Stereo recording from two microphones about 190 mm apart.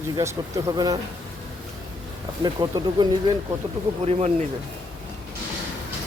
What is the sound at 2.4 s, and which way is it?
Speech, 20° right (ahead or behind).